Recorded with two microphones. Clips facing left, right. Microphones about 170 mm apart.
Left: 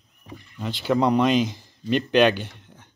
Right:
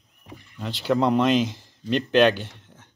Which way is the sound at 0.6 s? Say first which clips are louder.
Left 1 dB; centre (ahead or behind).